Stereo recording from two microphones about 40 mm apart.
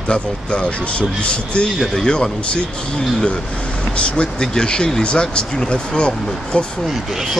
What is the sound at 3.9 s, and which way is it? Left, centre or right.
Speech, left.